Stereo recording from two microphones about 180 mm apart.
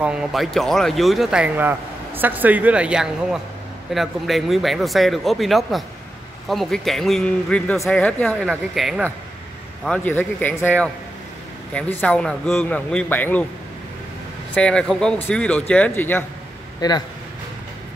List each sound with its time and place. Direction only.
0.0 s speech: 5° right (ahead or behind)
9.8 s speech: 10° left (ahead or behind)
14.5 s speech: 5° left (ahead or behind)
16.8 s speech: 20° left (ahead or behind)